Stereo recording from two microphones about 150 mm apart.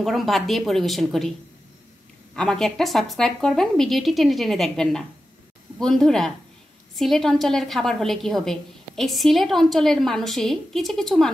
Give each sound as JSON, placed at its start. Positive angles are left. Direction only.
{"t": 0.0, "sound": "a woman's voice", "side_deg": 0}
{"t": 2.3, "sound": "a woman's voice", "side_deg": 5}